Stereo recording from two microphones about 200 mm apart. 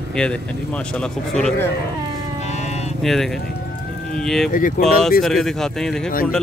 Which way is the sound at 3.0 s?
Centre (ahead or behind).